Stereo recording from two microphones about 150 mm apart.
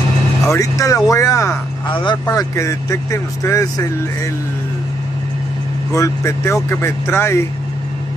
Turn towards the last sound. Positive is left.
turn(degrees=15)  # may be behind; listen again after turning